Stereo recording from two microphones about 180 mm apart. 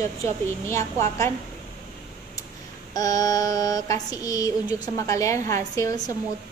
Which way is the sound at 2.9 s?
20° left (ahead or behind).